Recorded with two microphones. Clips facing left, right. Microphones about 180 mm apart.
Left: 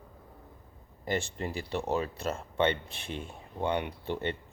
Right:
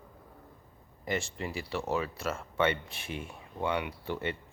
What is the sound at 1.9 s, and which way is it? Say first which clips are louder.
Speech: even; 30° left (ahead or behind).